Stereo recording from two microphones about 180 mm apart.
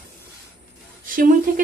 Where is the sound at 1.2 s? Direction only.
50° right (ahead or behind).